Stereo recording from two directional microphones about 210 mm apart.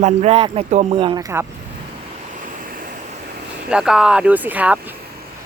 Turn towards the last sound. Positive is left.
turn(degrees=-5)  # may be behind; listen again after turning